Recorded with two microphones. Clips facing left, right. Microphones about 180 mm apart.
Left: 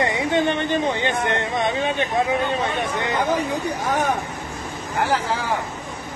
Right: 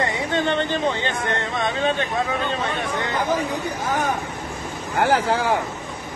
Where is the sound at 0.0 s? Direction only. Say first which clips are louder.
Left 2 dB; 15° left (ahead or behind).